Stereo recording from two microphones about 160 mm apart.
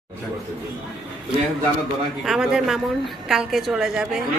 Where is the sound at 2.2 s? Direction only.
5° right (ahead or behind).